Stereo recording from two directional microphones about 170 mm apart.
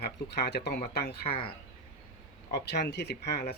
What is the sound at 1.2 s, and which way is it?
Speech, 30° left (ahead or behind).